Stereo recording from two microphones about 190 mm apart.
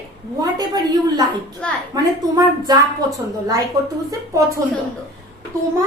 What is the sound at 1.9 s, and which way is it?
Speech, 20° right (ahead or behind).